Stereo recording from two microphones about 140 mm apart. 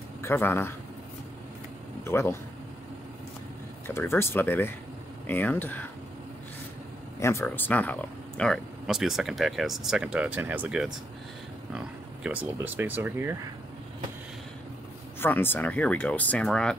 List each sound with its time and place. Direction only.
0.2 s a man's voice: 15° left (ahead or behind)
2.0 s speech: 20° left (ahead or behind)
3.9 s speech: 15° left (ahead or behind)
7.2 s speech: 20° left (ahead or behind); by 13.4 s 15° right (ahead or behind)
15.1 s speech: 15° left (ahead or behind)